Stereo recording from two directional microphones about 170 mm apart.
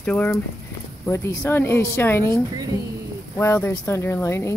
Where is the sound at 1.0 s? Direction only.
15° left (ahead or behind).